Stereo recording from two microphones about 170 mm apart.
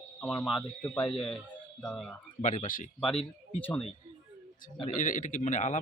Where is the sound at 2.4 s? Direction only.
45° left (ahead or behind).